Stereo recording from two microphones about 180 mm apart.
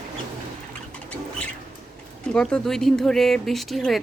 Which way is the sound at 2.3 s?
5° left (ahead or behind).